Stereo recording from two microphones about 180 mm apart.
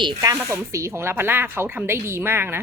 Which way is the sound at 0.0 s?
20° right (ahead or behind).